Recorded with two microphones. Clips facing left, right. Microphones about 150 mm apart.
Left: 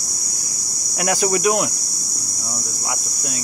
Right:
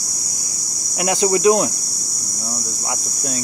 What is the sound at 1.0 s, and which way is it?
Speech, 25° right (ahead or behind).